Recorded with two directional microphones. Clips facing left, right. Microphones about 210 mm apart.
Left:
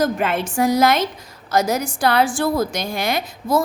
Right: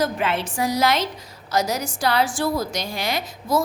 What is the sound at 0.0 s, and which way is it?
A woman's voice, 50° left (ahead or behind).